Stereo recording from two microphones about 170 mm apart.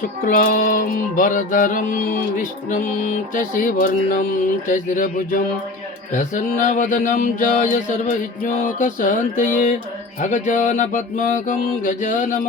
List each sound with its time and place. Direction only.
0.3 s music: 55° left (ahead or behind)